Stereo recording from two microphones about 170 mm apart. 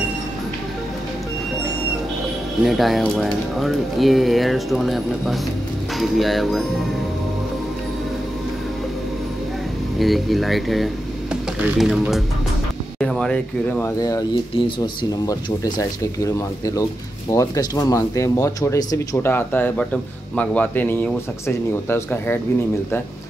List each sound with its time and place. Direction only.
2.6 s speech: centre (ahead or behind)
9.9 s speech: centre (ahead or behind); by 14.2 s 20° left (ahead or behind)
15.2 s speech: 20° left (ahead or behind)